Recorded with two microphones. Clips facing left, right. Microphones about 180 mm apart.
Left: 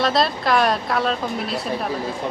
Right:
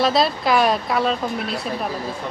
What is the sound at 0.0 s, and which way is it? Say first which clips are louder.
Speech: right 1 dB; centre (ahead or behind).